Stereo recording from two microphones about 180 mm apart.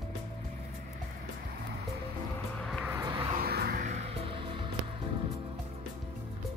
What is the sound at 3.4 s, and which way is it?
Music, 60° right (ahead or behind).